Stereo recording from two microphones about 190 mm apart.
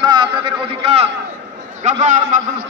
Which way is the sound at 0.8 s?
30° right (ahead or behind).